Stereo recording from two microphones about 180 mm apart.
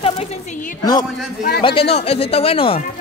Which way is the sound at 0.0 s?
35° left (ahead or behind).